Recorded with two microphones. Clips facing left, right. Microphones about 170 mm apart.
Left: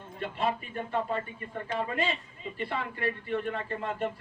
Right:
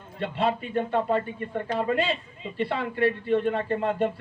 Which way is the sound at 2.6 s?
65° right (ahead or behind).